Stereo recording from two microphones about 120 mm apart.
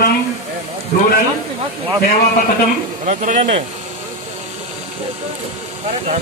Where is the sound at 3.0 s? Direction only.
80° right; by 3.7 s 60° right (ahead or behind).